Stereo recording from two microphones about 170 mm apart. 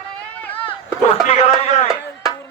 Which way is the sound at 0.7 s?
35° left (ahead or behind).